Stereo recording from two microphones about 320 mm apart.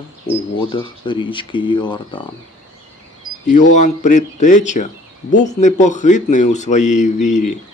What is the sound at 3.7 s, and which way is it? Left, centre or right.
Speech, left.